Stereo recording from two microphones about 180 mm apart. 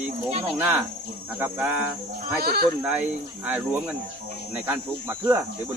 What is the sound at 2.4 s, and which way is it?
Speech, 60° right (ahead or behind).